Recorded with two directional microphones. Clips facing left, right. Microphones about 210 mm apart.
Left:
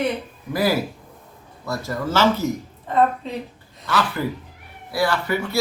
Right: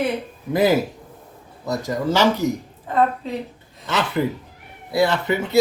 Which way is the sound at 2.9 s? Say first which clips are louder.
Even; centre (ahead or behind).